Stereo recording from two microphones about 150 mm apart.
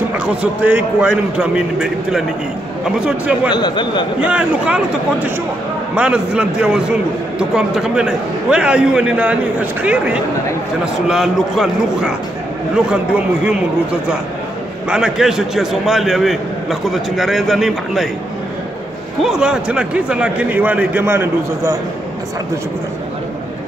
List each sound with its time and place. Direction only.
0.2 s a man's voice: 10° right (ahead or behind)
3.5 s speech: 30° left (ahead or behind)
4.2 s a man's voice: 10° right (ahead or behind)
14.9 s a man's voice: 5° right (ahead or behind)
19.2 s a man's voice: 5° right (ahead or behind)